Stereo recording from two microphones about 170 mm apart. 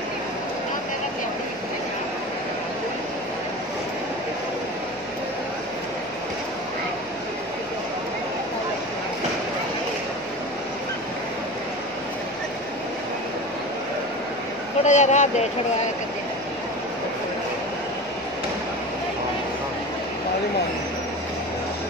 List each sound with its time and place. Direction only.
14.8 s speech: 45° left (ahead or behind)